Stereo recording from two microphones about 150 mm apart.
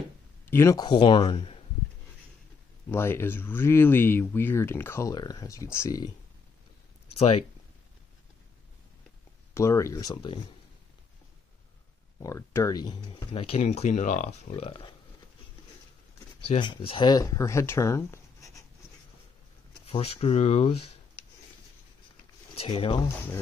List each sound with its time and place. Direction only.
0.5 s speech: 20° left (ahead or behind); by 1.6 s 40° left (ahead or behind)
2.9 s speech: 15° left (ahead or behind)
5.1 s speech: 25° left (ahead or behind)
7.2 s speech: 40° left (ahead or behind)
9.5 s speech: 20° left (ahead or behind)
12.2 s speech: 20° left (ahead or behind)
13.6 s speech: 50° left (ahead or behind)
14.5 s speech: 35° left (ahead or behind)
16.4 s speech: 30° left (ahead or behind)
19.9 s speech: 40° left (ahead or behind)
22.6 s speech: 40° left (ahead or behind)